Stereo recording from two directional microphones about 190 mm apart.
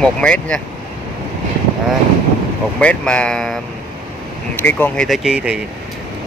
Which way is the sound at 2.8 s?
5° left (ahead or behind).